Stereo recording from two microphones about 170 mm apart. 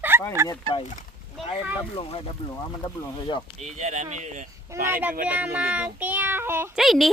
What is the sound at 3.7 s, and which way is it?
Speech, 45° right (ahead or behind).